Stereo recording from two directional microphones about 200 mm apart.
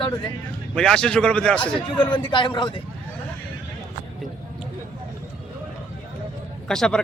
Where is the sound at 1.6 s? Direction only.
25° left (ahead or behind).